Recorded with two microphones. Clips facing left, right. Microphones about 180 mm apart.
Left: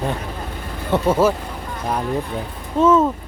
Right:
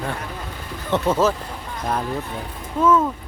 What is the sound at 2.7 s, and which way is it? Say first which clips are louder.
Speech: left 3 dB; 25° left (ahead or behind).